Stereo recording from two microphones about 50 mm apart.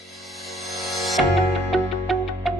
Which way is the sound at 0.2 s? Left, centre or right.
Centre.